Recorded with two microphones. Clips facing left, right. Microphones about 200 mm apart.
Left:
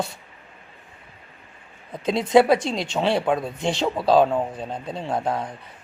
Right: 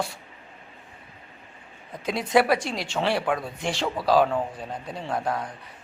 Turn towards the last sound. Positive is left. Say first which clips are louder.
# left 3 dB
turn(degrees=25)  # may be behind; listen again after turning